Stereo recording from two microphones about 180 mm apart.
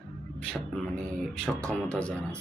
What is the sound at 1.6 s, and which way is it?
Speech, 5° left (ahead or behind).